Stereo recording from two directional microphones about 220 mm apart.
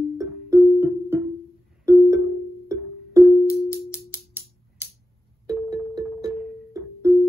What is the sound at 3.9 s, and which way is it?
Music, 5° right (ahead or behind).